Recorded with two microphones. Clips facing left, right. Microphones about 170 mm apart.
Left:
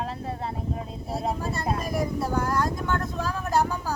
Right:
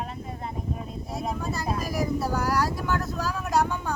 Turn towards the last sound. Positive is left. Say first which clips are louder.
# even
turn(degrees=0)  # may be behind; listen again after turning